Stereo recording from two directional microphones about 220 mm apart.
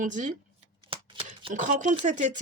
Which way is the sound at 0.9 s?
25° right (ahead or behind).